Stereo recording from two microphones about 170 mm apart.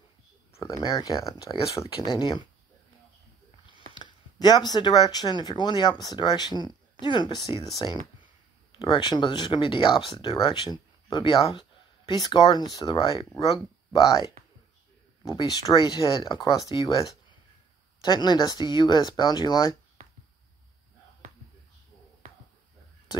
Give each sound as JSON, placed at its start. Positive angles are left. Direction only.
{"t": 0.6, "sound": "speech", "side_deg": 20}
{"t": 3.9, "sound": "speech", "side_deg": 25}
{"t": 18.0, "sound": "speech", "side_deg": 25}